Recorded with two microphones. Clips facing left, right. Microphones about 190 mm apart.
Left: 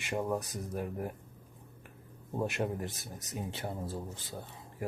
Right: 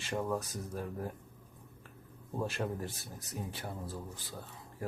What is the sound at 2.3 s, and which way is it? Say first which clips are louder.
A man's voice: left 3 dB; 20° left (ahead or behind).